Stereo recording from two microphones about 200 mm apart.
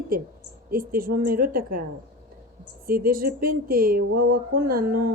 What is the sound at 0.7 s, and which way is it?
A woman's voice, 45° right (ahead or behind).